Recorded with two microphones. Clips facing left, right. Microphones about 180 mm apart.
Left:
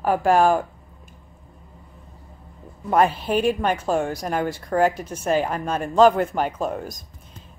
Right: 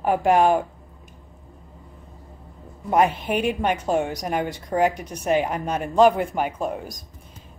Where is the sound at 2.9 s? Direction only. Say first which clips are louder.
Left 1 dB; 15° right (ahead or behind).